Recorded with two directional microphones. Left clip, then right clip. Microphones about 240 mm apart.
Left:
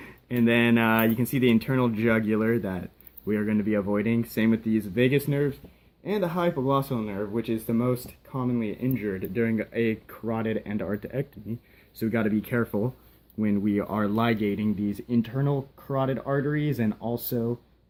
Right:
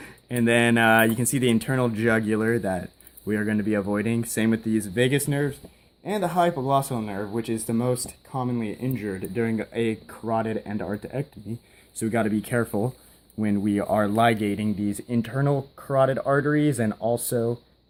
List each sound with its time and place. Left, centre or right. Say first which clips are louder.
0.0 s speech: right 1 dB; right